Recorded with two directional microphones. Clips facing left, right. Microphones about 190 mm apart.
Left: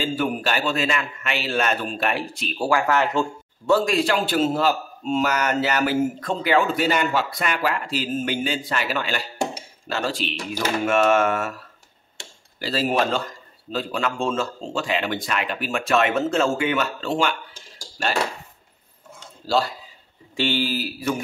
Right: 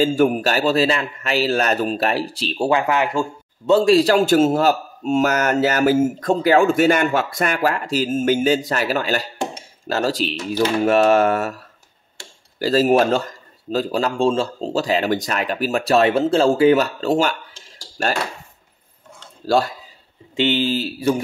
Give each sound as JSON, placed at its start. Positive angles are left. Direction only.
{"t": 0.0, "sound": "speech", "side_deg": -45}
{"t": 3.6, "sound": "speech", "side_deg": -25}
{"t": 3.9, "sound": "speech", "side_deg": -40}
{"t": 12.5, "sound": "speech", "side_deg": -45}
{"t": 19.4, "sound": "speech", "side_deg": -50}
{"t": 20.3, "sound": "speech", "side_deg": -20}